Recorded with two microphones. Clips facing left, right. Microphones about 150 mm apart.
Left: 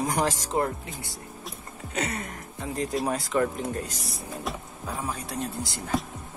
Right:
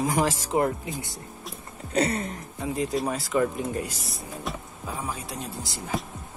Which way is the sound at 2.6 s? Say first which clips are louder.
Right 1 dB; 5° right (ahead or behind).